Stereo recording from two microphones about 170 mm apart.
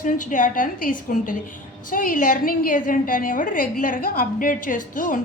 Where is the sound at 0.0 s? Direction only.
50° left (ahead or behind).